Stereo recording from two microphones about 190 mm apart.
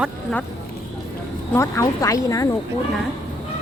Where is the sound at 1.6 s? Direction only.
15° left (ahead or behind).